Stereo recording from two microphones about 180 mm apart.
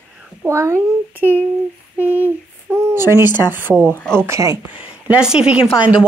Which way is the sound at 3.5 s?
10° right (ahead or behind).